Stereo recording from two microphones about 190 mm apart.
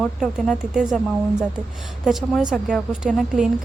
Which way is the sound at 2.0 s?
Centre (ahead or behind).